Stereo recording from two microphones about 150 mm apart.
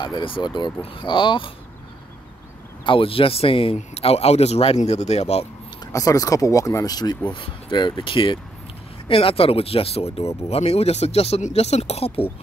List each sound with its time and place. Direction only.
0.0 s speech: 30° left (ahead or behind)
2.8 s speech: 35° left (ahead or behind)
5.9 s speech: 25° left (ahead or behind); by 12.3 s 40° left (ahead or behind)